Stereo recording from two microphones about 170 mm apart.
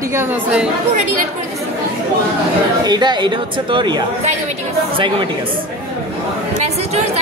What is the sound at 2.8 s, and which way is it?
Speech, 25° right (ahead or behind).